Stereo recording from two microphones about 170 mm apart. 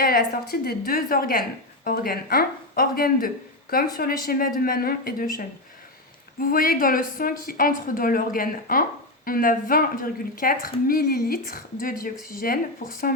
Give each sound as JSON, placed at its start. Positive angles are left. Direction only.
{"t": 0.0, "sound": "a woman's voice", "side_deg": 65}
{"t": 6.4, "sound": "a woman's voice", "side_deg": 60}